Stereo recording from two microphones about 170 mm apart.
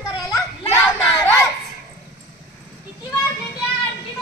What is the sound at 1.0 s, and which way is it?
Child singing, 5° left (ahead or behind).